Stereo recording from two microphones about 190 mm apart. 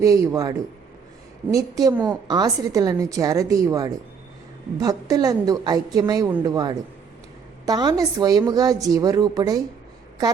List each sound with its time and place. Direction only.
0.0 s a man's voice: 15° right (ahead or behind)